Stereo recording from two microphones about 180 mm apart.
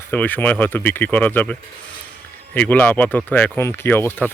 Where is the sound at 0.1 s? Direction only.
10° left (ahead or behind).